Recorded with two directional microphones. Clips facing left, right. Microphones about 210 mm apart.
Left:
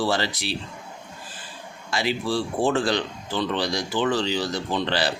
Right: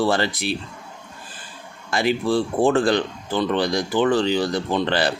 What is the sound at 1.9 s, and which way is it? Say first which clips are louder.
Speech: right 5 dB; 50° right (ahead or behind).